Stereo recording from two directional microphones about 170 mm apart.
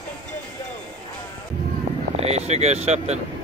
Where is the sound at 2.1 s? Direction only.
40° right (ahead or behind).